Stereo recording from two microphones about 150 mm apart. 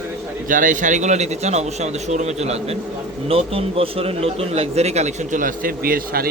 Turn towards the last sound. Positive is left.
turn(degrees=-80)